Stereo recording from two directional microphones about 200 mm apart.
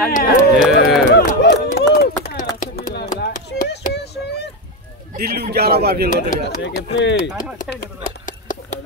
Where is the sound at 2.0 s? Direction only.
55° left (ahead or behind).